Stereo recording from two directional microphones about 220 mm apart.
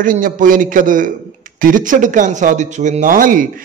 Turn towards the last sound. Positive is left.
turn(degrees=-40)  # may be behind; listen again after turning